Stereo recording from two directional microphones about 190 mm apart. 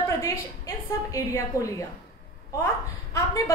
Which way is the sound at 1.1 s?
15° left (ahead or behind).